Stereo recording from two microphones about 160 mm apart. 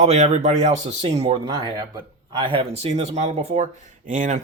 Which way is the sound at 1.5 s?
25° right (ahead or behind).